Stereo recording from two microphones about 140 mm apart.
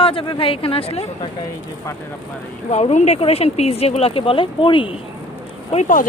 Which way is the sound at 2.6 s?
50° left (ahead or behind).